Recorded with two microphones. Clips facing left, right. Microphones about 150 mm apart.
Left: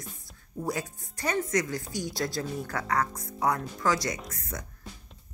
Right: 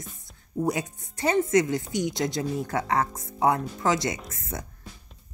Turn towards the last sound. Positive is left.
turn(degrees=-25)  # may be behind; listen again after turning